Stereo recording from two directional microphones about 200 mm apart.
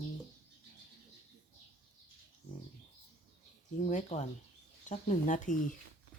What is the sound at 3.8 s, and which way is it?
Speech, 35° left (ahead or behind).